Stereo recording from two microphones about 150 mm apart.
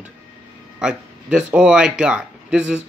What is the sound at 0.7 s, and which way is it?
Speech, 5° right (ahead or behind).